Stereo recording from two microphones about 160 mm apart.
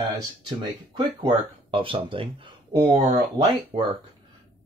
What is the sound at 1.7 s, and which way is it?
Speech, 35° right (ahead or behind).